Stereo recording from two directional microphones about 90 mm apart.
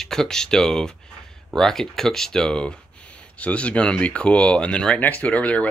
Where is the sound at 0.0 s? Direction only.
5° left (ahead or behind).